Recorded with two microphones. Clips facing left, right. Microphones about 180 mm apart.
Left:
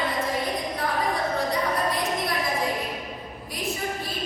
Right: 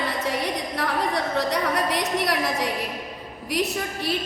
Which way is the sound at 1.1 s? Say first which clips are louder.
Right 2 dB; 75° right (ahead or behind).